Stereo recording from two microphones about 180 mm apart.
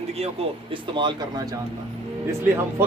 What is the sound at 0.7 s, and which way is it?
Speech, 25° right (ahead or behind).